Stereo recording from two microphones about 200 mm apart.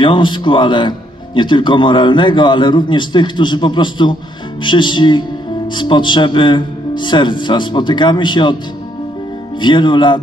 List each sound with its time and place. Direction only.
0.0 s speech: 25° left (ahead or behind)
9.6 s speech: 25° left (ahead or behind)